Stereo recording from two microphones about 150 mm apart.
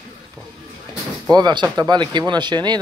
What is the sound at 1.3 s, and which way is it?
Speech, 30° right (ahead or behind).